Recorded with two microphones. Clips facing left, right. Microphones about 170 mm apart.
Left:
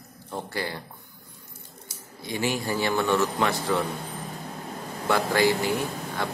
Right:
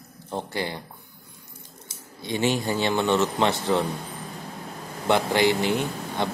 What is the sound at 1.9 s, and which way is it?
Speech, 25° right (ahead or behind).